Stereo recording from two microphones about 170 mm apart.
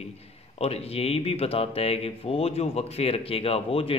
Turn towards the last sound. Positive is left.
turn(degrees=35)  # may be behind; listen again after turning